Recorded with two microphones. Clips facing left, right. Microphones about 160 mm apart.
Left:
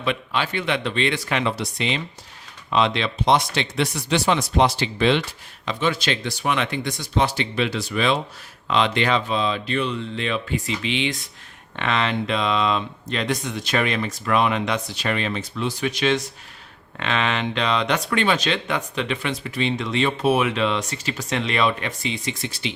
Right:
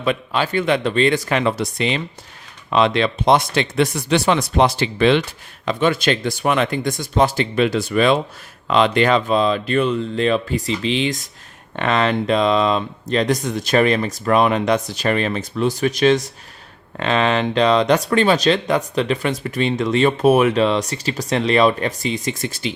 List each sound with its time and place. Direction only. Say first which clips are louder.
0.0 s speech: right 4 dB; 40° right (ahead or behind)